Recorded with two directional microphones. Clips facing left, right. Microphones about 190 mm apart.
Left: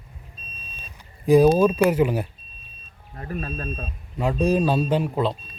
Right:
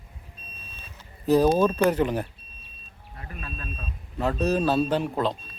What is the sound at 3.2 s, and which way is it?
Speech, 40° left (ahead or behind).